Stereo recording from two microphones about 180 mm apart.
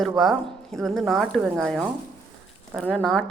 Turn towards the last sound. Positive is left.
turn(degrees=5)  # may be behind; listen again after turning